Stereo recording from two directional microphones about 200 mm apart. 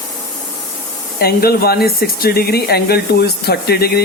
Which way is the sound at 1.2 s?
50° left (ahead or behind).